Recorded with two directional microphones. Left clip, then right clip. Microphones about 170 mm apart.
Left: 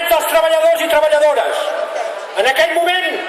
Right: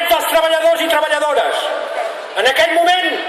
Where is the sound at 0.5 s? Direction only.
15° left (ahead or behind).